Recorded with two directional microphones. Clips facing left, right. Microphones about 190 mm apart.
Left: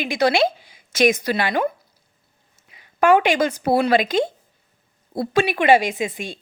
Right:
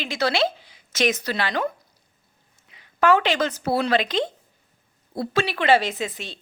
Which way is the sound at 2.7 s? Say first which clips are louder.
Left 3 dB; 15° left (ahead or behind).